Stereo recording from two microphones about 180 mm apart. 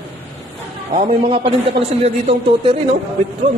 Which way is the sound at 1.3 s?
35° right (ahead or behind).